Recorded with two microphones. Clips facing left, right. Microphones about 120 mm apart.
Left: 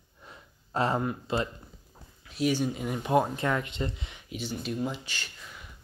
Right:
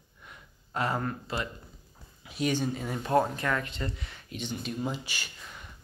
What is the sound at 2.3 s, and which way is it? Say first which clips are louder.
Speech: left 2 dB; 5° left (ahead or behind).